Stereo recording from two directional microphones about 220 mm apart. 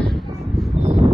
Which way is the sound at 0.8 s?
25° right (ahead or behind).